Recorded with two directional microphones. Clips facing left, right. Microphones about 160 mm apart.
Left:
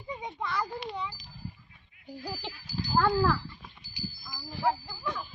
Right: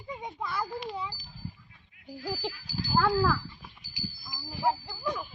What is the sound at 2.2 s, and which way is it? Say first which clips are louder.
Speech: right 6 dB; 10° right (ahead or behind).